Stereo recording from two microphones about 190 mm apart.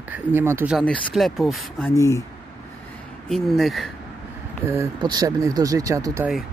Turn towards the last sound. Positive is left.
turn(degrees=-15)  # may be behind; listen again after turning